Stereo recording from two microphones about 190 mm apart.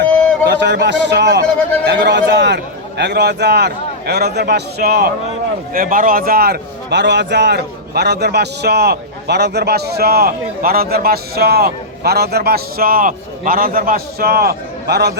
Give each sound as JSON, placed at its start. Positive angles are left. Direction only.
{"t": 0.4, "sound": "a man's voice", "side_deg": -65}
{"t": 5.7, "sound": "a man's voice", "side_deg": -45}